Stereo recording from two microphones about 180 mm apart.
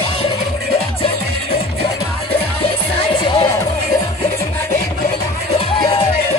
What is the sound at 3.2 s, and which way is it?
Music, 25° left (ahead or behind).